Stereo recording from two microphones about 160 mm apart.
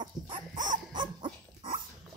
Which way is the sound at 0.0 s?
25° right (ahead or behind).